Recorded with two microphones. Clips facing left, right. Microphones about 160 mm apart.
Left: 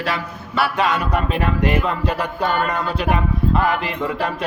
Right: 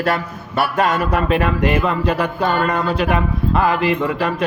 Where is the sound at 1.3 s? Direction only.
65° right (ahead or behind).